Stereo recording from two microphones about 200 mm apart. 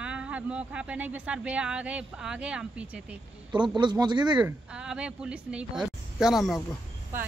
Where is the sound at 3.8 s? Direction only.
20° right (ahead or behind).